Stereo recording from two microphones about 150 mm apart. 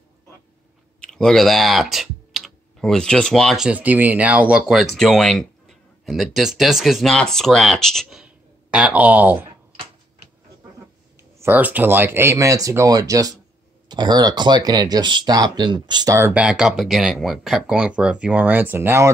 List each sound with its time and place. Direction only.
1.0 s speech: centre (ahead or behind)
11.3 s speech: 15° right (ahead or behind)
16.3 s speech: 10° right (ahead or behind)